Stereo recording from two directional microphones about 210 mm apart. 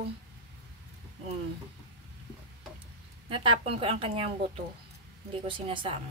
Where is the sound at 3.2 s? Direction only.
25° right (ahead or behind).